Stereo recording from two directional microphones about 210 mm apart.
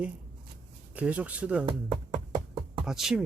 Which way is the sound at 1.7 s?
25° right (ahead or behind).